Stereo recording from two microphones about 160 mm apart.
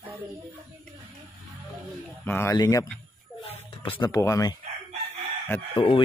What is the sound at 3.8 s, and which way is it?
Speech, 35° left (ahead or behind).